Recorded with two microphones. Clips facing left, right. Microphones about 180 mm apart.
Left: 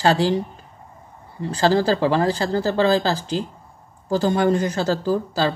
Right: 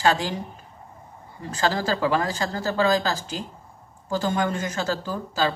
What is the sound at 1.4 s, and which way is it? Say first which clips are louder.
Speech: left 7 dB; 35° left (ahead or behind).